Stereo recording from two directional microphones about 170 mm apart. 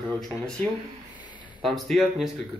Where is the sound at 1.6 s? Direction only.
Centre (ahead or behind).